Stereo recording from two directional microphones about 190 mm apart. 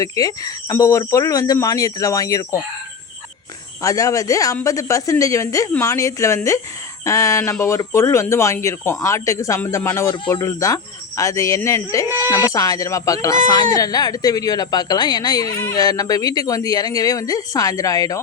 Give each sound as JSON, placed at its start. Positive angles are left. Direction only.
{"t": 0.0, "sound": "speech", "side_deg": 20}
{"t": 3.8, "sound": "speech", "side_deg": 15}